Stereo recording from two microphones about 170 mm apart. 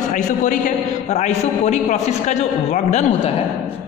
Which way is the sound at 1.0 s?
40° left (ahead or behind).